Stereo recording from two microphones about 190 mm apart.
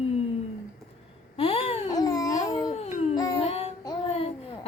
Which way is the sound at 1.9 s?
20° left (ahead or behind).